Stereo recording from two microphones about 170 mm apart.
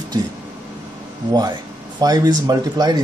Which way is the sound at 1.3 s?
20° right (ahead or behind).